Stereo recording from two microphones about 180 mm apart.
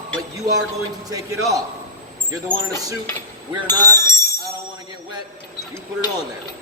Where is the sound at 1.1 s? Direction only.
20° right (ahead or behind).